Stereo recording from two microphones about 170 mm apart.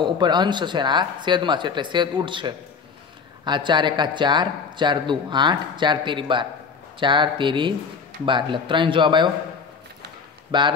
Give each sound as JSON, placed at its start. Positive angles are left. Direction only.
{"t": 0.0, "sound": "speech", "side_deg": -25}
{"t": 10.5, "sound": "speech", "side_deg": -25}